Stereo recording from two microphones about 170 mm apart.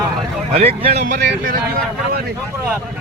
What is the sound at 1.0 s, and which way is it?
Speech, 55° right (ahead or behind).